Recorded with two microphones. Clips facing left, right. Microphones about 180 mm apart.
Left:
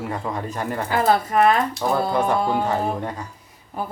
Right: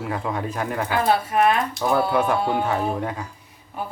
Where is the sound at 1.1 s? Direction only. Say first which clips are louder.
Left 2 dB; 40° left (ahead or behind).